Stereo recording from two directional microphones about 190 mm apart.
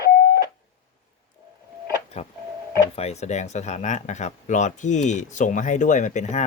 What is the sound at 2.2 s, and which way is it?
Doorbell, 35° left (ahead or behind).